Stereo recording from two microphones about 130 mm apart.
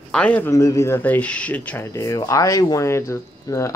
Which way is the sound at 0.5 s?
25° left (ahead or behind).